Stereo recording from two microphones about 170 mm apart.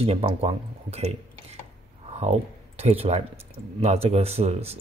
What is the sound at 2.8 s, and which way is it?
Speech, 35° right (ahead or behind).